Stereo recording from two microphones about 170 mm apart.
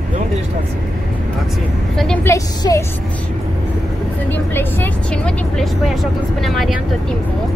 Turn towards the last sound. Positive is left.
turn(degrees=0)  # may be behind; listen again after turning